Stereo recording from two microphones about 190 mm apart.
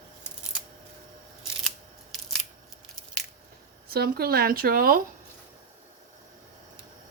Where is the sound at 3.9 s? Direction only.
55° right (ahead or behind).